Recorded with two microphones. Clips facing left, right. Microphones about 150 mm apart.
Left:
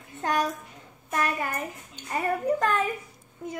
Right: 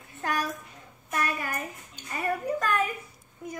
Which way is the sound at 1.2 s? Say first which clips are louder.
Left 3 dB; 25° left (ahead or behind).